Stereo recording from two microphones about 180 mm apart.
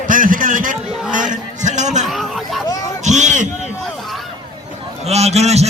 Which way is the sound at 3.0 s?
40° right (ahead or behind).